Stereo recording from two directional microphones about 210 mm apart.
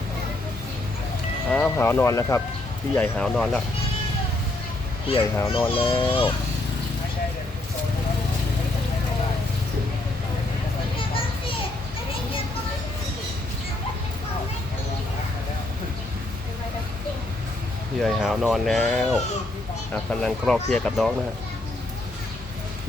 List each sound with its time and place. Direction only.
1.5 s speech: 10° left (ahead or behind)
5.4 s a child's voice: 25° left (ahead or behind)
18.0 s speech: centre (ahead or behind)